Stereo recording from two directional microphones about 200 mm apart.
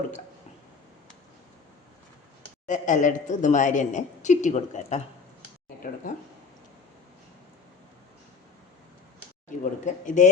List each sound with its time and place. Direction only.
2.6 s a woman's voice: 40° left (ahead or behind)
9.5 s a woman's voice: 40° left (ahead or behind)